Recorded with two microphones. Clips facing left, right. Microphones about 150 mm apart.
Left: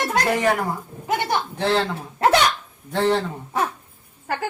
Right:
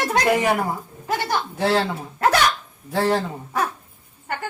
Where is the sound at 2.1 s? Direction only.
25° left (ahead or behind).